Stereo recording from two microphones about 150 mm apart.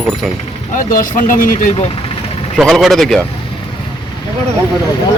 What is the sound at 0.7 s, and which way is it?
Speech, 65° left (ahead or behind).